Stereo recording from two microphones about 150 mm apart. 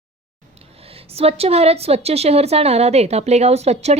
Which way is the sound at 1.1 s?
40° right (ahead or behind).